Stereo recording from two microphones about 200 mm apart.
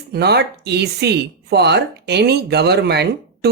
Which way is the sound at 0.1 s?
55° right (ahead or behind).